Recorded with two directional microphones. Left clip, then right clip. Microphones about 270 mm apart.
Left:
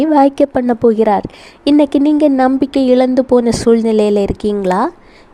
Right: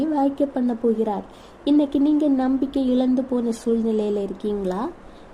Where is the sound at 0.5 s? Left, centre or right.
Left.